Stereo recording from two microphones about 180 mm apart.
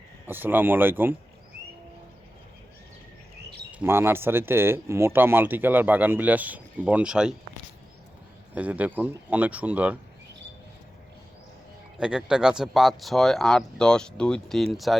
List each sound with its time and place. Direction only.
0.3 s speech: 10° right (ahead or behind)
3.7 s speech: 10° right (ahead or behind)
8.5 s speech: 10° right (ahead or behind)
11.9 s speech: 5° right (ahead or behind)